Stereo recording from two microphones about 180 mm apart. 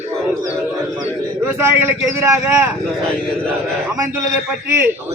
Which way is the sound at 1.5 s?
15° right (ahead or behind).